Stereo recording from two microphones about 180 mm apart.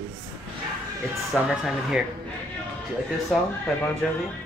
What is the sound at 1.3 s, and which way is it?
Speech, centre (ahead or behind).